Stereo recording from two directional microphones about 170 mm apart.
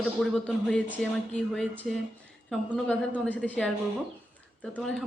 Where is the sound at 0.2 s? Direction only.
5° left (ahead or behind).